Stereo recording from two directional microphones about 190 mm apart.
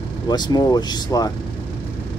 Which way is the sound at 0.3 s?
20° left (ahead or behind).